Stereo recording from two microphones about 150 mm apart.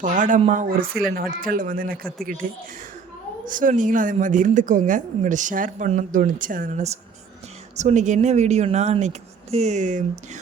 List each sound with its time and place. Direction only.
0.0 s a woman's voice: 55° right (ahead or behind)
1.1 s a man's voice: 80° right
3.4 s a woman's voice: 60° right (ahead or behind)